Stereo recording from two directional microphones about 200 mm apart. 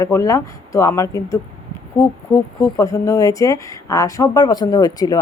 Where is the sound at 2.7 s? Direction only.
15° left (ahead or behind).